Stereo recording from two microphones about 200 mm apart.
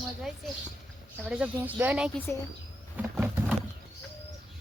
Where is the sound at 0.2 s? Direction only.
Centre (ahead or behind).